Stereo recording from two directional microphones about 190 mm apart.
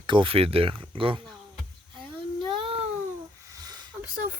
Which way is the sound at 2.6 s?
30° right (ahead or behind).